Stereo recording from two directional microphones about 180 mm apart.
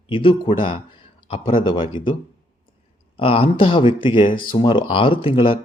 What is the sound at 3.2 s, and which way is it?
Speech, 30° left (ahead or behind).